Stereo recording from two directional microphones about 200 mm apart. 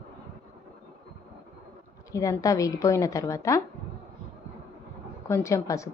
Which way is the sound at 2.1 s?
15° left (ahead or behind).